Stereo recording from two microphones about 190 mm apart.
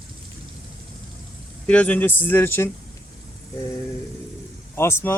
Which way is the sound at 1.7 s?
5° left (ahead or behind).